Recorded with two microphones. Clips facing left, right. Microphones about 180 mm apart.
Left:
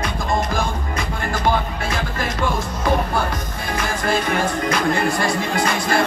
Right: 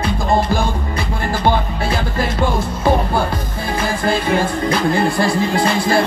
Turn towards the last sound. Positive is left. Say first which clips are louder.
# right 4 dB
turn(degrees=-30)  # may be behind; listen again after turning